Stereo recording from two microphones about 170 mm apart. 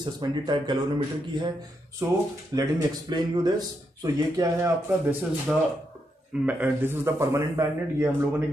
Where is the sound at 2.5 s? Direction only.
25° right (ahead or behind).